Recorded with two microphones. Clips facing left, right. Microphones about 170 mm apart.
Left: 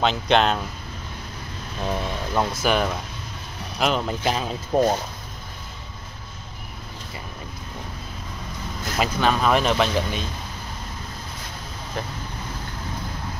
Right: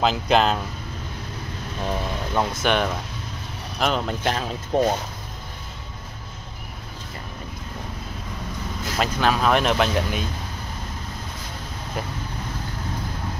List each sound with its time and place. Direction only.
0.0 s speech: 5° right (ahead or behind)
1.9 s speech: centre (ahead or behind)
8.9 s speech: centre (ahead or behind)